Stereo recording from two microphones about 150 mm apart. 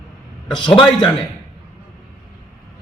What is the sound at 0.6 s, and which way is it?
Speech, 35° left (ahead or behind).